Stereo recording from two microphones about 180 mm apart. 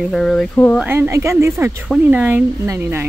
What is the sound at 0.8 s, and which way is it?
Speech, 10° right (ahead or behind).